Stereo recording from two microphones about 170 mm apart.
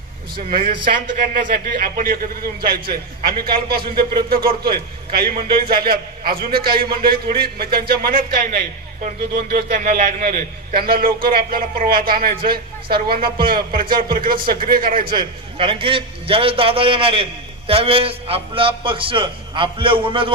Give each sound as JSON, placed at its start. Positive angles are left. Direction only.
{"t": 0.3, "sound": "a man's voice", "side_deg": -60}
{"t": 15.1, "sound": "a man's voice", "side_deg": -30}